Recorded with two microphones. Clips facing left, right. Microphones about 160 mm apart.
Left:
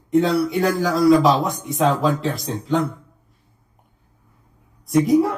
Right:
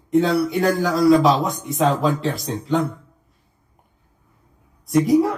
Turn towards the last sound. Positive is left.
turn(degrees=0)  # may be behind; listen again after turning